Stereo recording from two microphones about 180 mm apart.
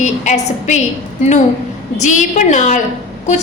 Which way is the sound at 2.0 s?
45° left (ahead or behind).